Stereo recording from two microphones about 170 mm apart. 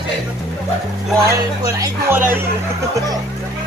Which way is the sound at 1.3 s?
20° right (ahead or behind).